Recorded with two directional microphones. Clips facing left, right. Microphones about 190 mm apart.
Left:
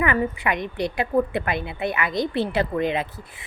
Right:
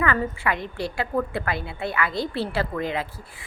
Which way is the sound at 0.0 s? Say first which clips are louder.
Left 2 dB; 20° left (ahead or behind).